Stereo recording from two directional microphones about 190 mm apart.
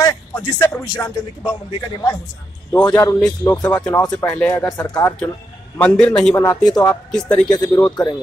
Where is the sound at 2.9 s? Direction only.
15° left (ahead or behind).